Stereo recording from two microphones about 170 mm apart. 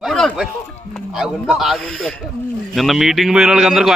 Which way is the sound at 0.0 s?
Centre (ahead or behind).